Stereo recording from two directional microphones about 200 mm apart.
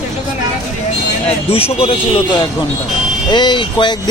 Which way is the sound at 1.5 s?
30° left (ahead or behind).